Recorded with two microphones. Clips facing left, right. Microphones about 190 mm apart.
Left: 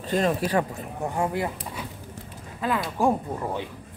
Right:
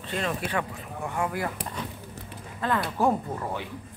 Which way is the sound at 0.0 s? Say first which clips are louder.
Left 6 dB; 40° left (ahead or behind).